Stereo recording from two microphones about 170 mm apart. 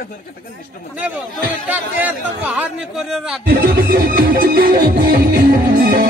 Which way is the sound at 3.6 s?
70° right (ahead or behind).